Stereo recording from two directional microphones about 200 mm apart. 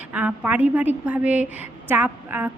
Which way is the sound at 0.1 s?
5° right (ahead or behind).